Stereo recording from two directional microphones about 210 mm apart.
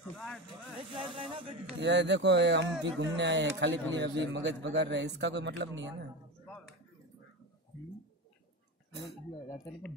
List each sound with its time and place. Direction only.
0.7 s vehicle: 25° right (ahead or behind)
1.8 s speech: 55° right (ahead or behind)